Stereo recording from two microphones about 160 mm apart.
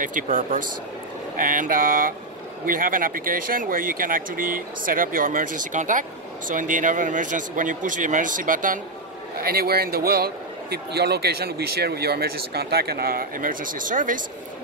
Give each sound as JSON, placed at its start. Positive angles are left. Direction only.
{"t": 0.0, "sound": "speech", "side_deg": -55}
{"t": 9.4, "sound": "speech", "side_deg": -70}